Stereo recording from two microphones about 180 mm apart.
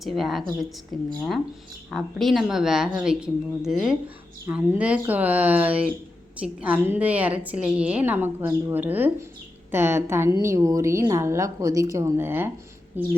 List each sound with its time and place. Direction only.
0.0 s a woman's voice: centre (ahead or behind)